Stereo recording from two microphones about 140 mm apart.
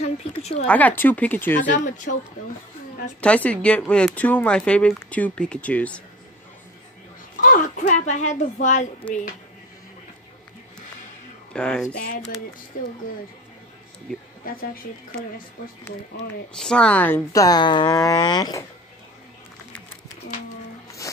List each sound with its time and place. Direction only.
0.0 s speech: 50° left (ahead or behind)
0.7 s speech: 10° left (ahead or behind)
1.6 s a child's voice: 65° left (ahead or behind)
3.2 s speech: 10° left (ahead or behind)
7.3 s a child's voice: 70° left (ahead or behind)
9.0 s speech: 10° left (ahead or behind)
11.5 s speech: 5° left (ahead or behind)
12.7 s speech: 90° left
14.4 s speech: 90° left
16.5 s a woman's voice: 5° left (ahead or behind); by 18.6 s 30° left (ahead or behind)